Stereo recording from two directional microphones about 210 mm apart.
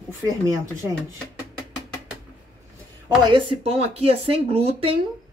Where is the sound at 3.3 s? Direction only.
25° right (ahead or behind).